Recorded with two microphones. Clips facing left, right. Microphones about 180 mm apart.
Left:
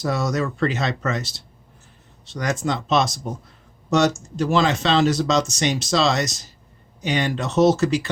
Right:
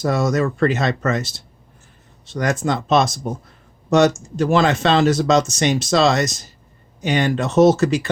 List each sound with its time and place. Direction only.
0.0 s speech: 50° right (ahead or behind)